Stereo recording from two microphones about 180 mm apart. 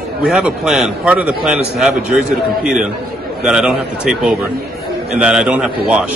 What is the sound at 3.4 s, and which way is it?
A man's voice, 5° right (ahead or behind).